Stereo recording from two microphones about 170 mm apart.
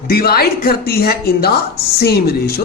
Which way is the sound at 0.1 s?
65° left (ahead or behind).